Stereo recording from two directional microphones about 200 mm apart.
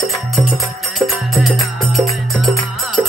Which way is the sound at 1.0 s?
Centre (ahead or behind).